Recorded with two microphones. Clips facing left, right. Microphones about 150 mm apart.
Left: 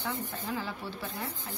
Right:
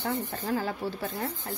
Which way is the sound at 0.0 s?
45° right (ahead or behind).